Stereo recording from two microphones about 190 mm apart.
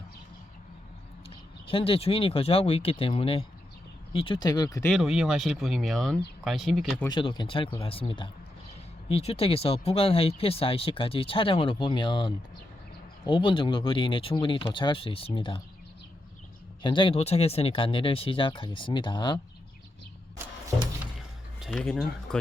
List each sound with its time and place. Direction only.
1.6 s speech: 30° left (ahead or behind)
4.9 s speech: centre (ahead or behind)
7.1 s speech: 25° left (ahead or behind)
16.8 s speech: 25° left (ahead or behind)
21.2 s a sound: centre (ahead or behind)